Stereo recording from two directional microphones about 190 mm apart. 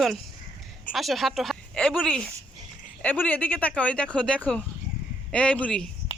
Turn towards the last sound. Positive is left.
turn(degrees=5)  # may be behind; listen again after turning